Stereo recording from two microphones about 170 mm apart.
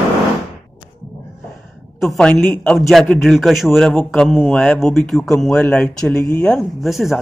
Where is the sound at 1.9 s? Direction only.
Centre (ahead or behind).